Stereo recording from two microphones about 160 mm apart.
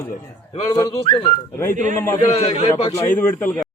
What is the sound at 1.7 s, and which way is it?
Speech, 50° right (ahead or behind).